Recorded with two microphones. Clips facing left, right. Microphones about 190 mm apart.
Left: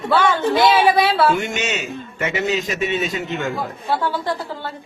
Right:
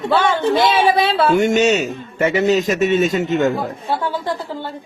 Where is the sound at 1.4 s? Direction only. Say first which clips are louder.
Right 10 dB; 40° right (ahead or behind).